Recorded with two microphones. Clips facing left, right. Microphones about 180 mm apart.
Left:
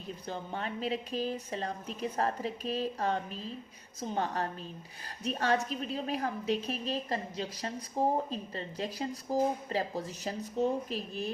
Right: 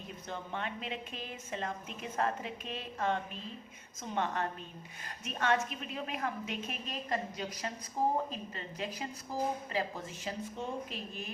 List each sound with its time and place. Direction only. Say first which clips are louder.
0.3 s speech: left 2 dB; 35° left (ahead or behind)